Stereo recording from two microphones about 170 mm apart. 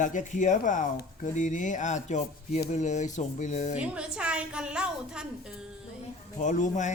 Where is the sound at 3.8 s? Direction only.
5° right (ahead or behind).